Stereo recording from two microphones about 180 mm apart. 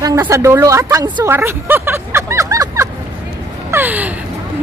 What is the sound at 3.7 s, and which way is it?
Gasp, 10° right (ahead or behind).